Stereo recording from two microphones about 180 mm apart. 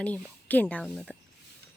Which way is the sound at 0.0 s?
10° left (ahead or behind).